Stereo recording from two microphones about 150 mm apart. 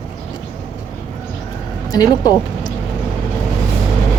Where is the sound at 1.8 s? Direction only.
25° left (ahead or behind).